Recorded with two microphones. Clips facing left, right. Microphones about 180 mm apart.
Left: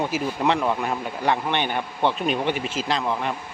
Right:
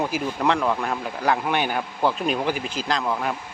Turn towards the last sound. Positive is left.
turn(degrees=0)  # may be behind; listen again after turning